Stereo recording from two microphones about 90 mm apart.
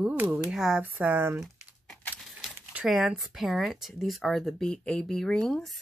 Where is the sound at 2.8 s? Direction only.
5° right (ahead or behind).